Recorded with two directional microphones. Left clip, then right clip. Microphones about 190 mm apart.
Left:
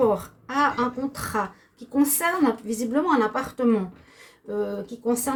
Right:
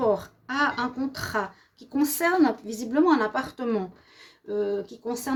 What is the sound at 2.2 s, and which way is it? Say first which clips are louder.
A woman's voice: right 1 dB; 50° right (ahead or behind).